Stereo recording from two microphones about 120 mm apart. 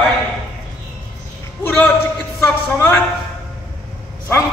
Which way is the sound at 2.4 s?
20° left (ahead or behind).